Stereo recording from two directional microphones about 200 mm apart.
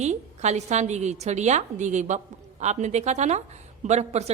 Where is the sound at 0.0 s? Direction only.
35° right (ahead or behind).